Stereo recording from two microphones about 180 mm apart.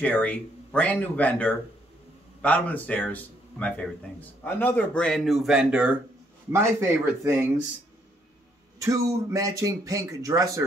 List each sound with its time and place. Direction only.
0.0 s speech: 10° left (ahead or behind); by 7.3 s 15° right (ahead or behind)
8.8 s speech: 15° right (ahead or behind)